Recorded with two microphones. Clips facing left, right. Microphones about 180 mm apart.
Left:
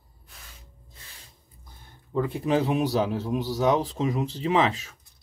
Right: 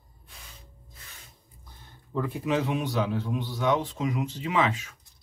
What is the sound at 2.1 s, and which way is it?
Speech, 20° left (ahead or behind).